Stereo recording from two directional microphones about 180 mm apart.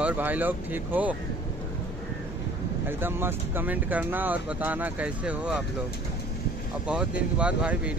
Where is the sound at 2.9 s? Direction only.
10° right (ahead or behind).